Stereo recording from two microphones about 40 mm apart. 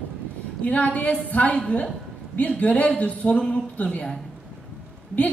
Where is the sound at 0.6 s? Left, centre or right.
Left.